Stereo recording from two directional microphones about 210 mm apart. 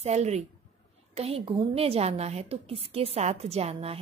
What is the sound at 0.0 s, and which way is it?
A woman's voice, 30° right (ahead or behind).